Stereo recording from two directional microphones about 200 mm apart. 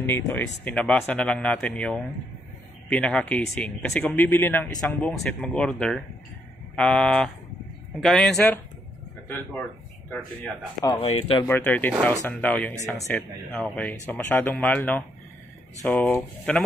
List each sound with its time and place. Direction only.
0.0 s speech: 10° left (ahead or behind)
10.8 s speech: 20° left (ahead or behind)
11.4 s speech: 10° left (ahead or behind)